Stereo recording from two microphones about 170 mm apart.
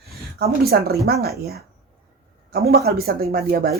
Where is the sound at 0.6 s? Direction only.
65° right (ahead or behind).